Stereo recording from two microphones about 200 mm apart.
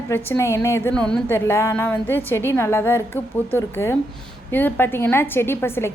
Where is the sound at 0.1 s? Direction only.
10° left (ahead or behind).